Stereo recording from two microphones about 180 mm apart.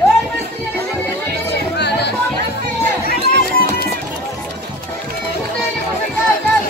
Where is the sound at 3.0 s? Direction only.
60° left (ahead or behind).